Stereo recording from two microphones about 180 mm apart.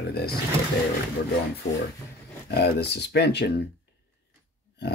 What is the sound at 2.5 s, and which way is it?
Speech, 65° left (ahead or behind).